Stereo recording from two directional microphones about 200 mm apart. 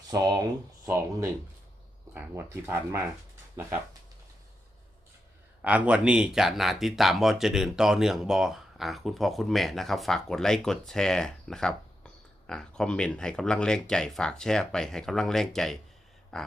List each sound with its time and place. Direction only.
0.1 s speech: 15° right (ahead or behind)
5.6 s speech: 5° right (ahead or behind)